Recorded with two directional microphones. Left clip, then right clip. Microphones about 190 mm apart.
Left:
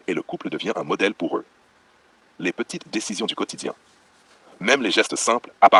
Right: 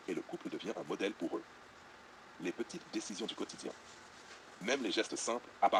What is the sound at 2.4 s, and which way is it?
Speech, 45° left (ahead or behind).